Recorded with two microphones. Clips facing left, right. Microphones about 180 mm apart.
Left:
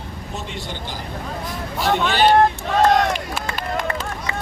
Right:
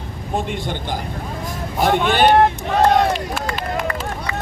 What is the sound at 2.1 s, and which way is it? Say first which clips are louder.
Speech: right 1 dB; 50° right (ahead or behind).